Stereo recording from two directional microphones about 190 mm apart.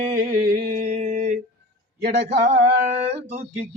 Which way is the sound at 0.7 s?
35° right (ahead or behind).